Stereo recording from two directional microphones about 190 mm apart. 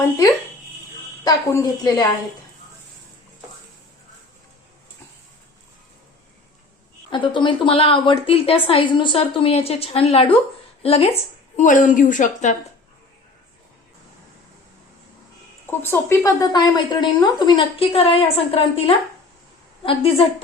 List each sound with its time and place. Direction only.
1.2 s speech: 20° left (ahead or behind)
7.1 s a woman's voice: 25° left (ahead or behind); by 12.5 s 40° left (ahead or behind)
15.6 s speech: 10° left (ahead or behind); by 20.2 s 30° left (ahead or behind)